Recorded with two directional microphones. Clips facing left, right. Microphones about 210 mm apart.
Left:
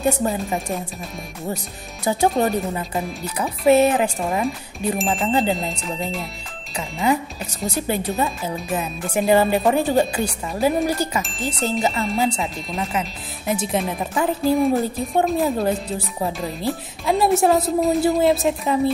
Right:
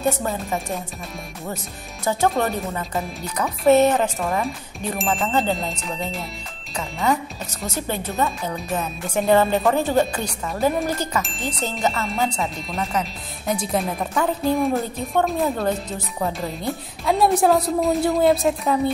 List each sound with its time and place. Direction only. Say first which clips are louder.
0.2 s speech: left 3 dB; 20° left (ahead or behind)
2.0 s speech: left 2 dB; 15° left (ahead or behind)
4.9 s a woman's voice: left 1 dB; centre (ahead or behind)
7.6 s a woman's voice: left 4 dB; 15° left (ahead or behind)